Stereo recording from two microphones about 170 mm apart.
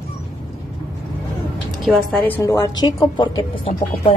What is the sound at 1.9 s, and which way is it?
A woman's voice, 5° left (ahead or behind).